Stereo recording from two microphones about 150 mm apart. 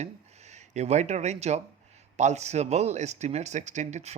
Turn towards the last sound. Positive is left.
turn(degrees=-50)  # may be behind; listen again after turning